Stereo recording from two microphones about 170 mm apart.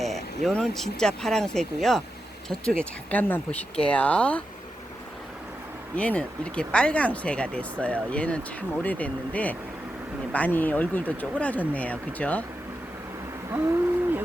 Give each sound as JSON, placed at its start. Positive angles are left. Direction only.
{"t": 0.0, "sound": "speech", "side_deg": 0}
{"t": 6.0, "sound": "speech", "side_deg": 5}
{"t": 13.5, "sound": "a sound", "side_deg": -15}